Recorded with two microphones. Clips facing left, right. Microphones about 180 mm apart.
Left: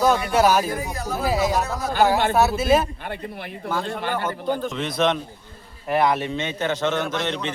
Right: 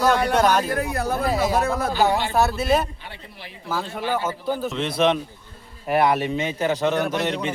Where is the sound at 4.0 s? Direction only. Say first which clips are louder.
Right 2 dB; 60° left (ahead or behind).